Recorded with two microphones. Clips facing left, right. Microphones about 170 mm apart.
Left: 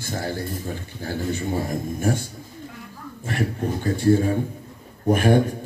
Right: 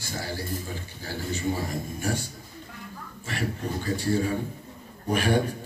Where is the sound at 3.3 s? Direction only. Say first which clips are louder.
Left 5 dB; 50° left (ahead or behind).